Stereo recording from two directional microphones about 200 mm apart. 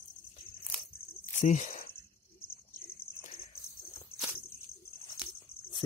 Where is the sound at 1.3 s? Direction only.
35° left (ahead or behind).